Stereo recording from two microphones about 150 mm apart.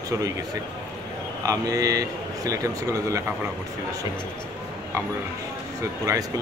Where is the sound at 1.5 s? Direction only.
25° right (ahead or behind).